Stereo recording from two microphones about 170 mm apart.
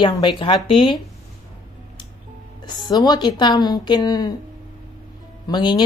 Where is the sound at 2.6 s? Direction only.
25° left (ahead or behind).